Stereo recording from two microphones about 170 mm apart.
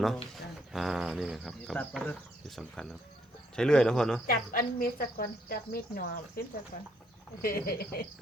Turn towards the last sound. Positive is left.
turn(degrees=65)  # may be behind; listen again after turning